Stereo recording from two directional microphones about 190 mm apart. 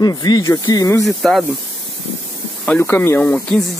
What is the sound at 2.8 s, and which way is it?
Speech, 15° left (ahead or behind).